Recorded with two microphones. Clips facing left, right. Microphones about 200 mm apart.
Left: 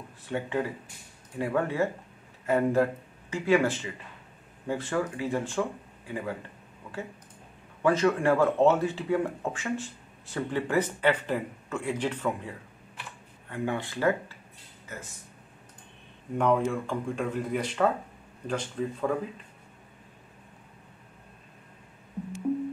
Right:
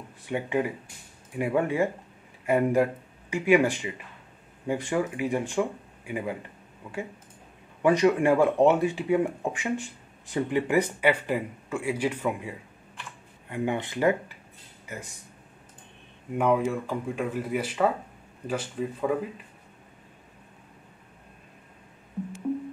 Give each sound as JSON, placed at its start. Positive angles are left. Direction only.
{"t": 0.3, "sound": "speech", "side_deg": -15}
{"t": 7.8, "sound": "speech", "side_deg": -15}
{"t": 16.3, "sound": "speech", "side_deg": -5}